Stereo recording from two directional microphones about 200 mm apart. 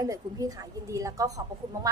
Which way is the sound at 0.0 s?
15° right (ahead or behind).